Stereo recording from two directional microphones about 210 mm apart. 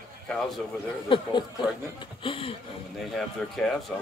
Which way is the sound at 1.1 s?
25° left (ahead or behind).